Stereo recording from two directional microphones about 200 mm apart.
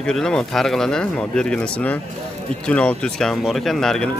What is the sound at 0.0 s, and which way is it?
Speech, 5° left (ahead or behind).